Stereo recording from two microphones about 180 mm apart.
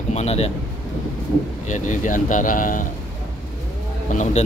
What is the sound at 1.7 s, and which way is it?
Speech, 45° left (ahead or behind).